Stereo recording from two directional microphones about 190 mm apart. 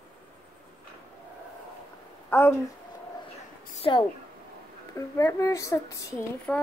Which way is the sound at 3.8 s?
25° left (ahead or behind).